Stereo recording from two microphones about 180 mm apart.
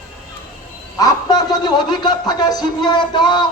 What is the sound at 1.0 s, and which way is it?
Speech, 20° left (ahead or behind).